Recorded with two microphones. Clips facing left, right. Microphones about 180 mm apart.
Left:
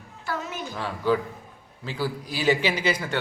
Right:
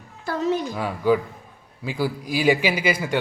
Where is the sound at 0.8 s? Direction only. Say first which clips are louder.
Left 1 dB; 10° right (ahead or behind).